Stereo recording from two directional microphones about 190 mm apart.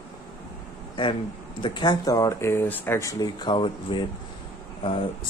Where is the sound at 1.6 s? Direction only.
25° left (ahead or behind).